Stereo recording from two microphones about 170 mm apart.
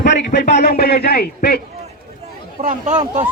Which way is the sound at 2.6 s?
50° right (ahead or behind).